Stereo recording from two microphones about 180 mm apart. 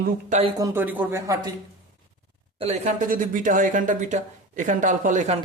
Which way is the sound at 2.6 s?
40° right (ahead or behind).